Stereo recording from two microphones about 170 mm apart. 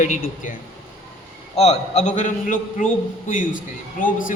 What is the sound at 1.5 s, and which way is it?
Speech, 40° left (ahead or behind).